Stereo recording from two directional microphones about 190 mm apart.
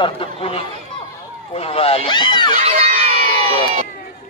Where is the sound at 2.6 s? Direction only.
35° right (ahead or behind).